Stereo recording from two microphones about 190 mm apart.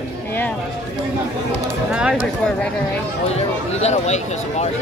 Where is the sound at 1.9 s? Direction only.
5° right (ahead or behind).